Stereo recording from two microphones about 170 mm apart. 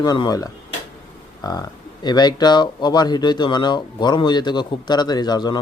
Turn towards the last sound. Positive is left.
turn(degrees=25)  # may be behind; listen again after turning